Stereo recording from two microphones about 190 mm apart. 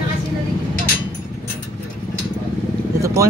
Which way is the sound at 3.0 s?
15° right (ahead or behind).